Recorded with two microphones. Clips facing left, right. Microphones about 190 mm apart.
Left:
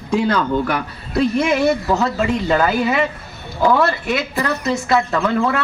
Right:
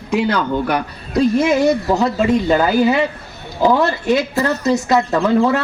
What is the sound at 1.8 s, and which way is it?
Speech, 15° right (ahead or behind).